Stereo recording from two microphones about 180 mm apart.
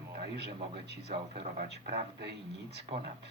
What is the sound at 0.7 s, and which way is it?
Speech, 65° right (ahead or behind).